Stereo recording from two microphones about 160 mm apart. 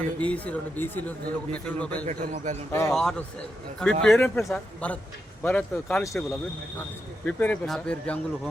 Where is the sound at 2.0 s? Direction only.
50° right (ahead or behind).